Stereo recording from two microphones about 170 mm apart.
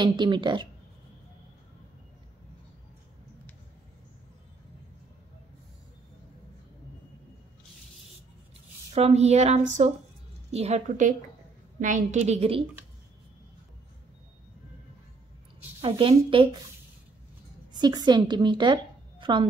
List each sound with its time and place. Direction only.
0.0 s speech: 25° right (ahead or behind)
8.9 s speech: 40° right (ahead or behind)
15.8 s speech: 30° right (ahead or behind)
17.7 s a woman's voice: 25° right (ahead or behind)